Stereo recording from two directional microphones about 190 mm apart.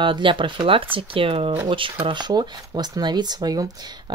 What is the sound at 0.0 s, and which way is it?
Speech, 25° right (ahead or behind).